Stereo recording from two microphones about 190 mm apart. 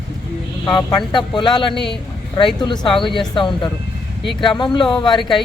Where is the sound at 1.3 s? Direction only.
25° left (ahead or behind).